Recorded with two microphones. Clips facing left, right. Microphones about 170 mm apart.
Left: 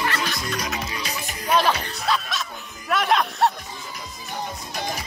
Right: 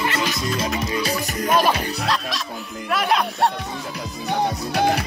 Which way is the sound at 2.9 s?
Centre (ahead or behind).